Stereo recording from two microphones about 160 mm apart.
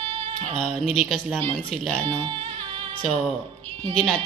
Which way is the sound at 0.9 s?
Centre (ahead or behind).